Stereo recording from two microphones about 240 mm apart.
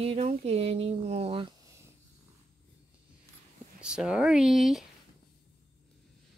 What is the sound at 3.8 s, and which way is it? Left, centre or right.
Speech, centre.